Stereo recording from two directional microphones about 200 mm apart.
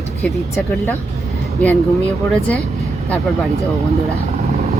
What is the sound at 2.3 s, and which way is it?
Speech, centre (ahead or behind).